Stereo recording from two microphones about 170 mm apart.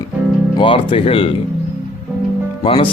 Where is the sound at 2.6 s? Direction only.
35° left (ahead or behind).